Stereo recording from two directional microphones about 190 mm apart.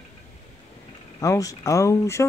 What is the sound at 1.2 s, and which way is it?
Speech, 15° left (ahead or behind).